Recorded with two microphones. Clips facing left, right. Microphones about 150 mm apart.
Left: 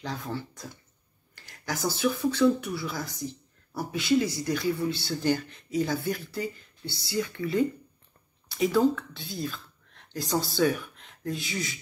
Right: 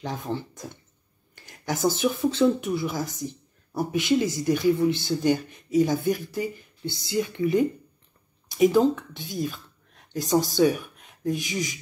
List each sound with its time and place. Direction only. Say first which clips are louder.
0.0 s speech: right 4 dB; 20° right (ahead or behind)